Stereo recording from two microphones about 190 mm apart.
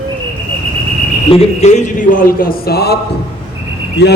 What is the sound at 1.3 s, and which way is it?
Speech, 35° left (ahead or behind).